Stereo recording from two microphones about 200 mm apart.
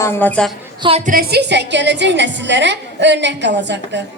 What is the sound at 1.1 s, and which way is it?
A woman's voice, 55° right (ahead or behind).